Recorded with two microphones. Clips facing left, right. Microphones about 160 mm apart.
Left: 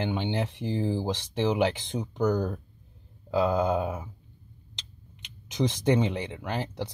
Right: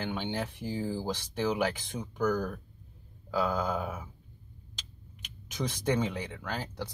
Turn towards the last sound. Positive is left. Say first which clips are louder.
# left 5 dB
turn(degrees=20)  # may be behind; listen again after turning